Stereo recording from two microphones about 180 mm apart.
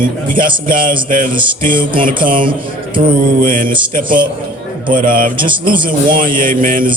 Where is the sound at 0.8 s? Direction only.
25° right (ahead or behind).